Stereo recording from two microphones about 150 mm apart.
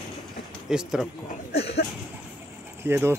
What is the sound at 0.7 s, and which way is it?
Speech, 5° right (ahead or behind).